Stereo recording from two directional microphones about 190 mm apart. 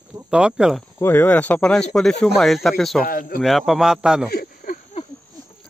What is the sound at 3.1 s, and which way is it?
Speech, 50° left (ahead or behind).